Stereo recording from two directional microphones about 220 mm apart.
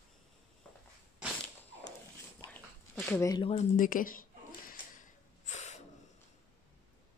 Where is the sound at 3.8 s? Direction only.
40° left (ahead or behind).